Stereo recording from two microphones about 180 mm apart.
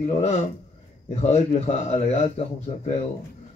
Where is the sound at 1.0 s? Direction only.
35° left (ahead or behind).